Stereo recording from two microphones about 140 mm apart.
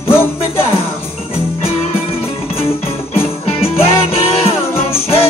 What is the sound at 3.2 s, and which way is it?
Music, 45° left (ahead or behind).